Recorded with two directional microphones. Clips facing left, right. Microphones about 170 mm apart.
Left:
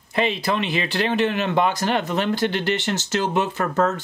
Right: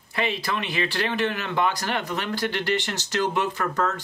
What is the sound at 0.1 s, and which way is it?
Speech, 20° left (ahead or behind).